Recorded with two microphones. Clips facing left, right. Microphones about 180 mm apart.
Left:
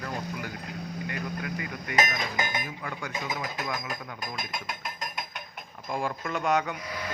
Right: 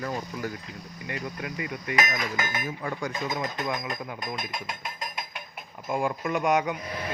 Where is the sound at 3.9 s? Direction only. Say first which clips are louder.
Right 3 dB; centre (ahead or behind).